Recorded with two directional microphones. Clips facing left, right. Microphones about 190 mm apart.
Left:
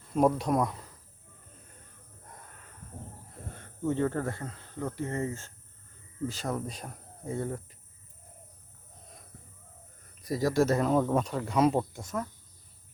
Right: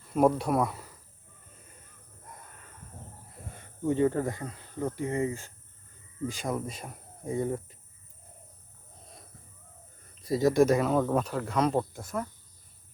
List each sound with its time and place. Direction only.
0.1 s speech: 5° right (ahead or behind)
3.5 s speech: 15° right (ahead or behind)
10.2 s speech: 25° right (ahead or behind)
11.1 s speech: 5° right (ahead or behind)